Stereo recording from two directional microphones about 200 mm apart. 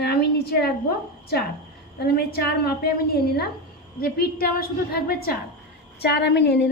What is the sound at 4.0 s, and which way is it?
Speech, 45° left (ahead or behind).